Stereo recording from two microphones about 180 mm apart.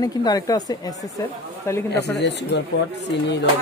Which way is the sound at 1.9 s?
70° left (ahead or behind).